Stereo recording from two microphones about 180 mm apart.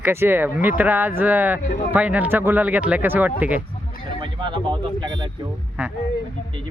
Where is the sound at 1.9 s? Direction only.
10° right (ahead or behind).